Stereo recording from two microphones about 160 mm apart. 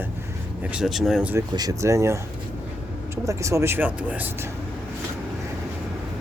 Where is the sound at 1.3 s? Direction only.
20° right (ahead or behind).